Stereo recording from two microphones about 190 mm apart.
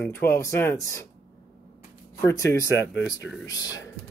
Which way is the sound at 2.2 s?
15° left (ahead or behind).